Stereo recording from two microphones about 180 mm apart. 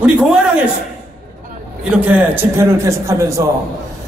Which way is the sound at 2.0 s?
10° right (ahead or behind).